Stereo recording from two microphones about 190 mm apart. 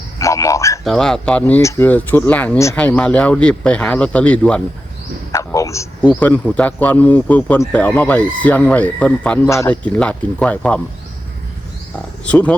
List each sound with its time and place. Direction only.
0.2 s a sound: 15° left (ahead or behind)
0.9 s a man's voice: centre (ahead or behind)
5.3 s a man's voice: 15° left (ahead or behind)
12.2 s a man's voice: 5° left (ahead or behind)